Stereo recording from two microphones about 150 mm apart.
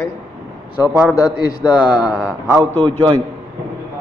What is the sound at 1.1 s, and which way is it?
Speech, 25° left (ahead or behind).